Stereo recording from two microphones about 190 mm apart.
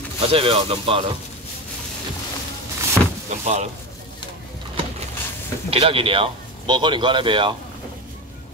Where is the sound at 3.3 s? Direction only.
35° right (ahead or behind).